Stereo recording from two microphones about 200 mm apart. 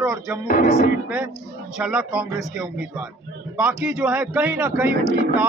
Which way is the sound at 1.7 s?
5° right (ahead or behind).